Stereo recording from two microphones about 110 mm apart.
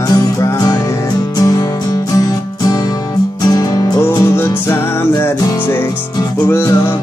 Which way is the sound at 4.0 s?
20° left (ahead or behind).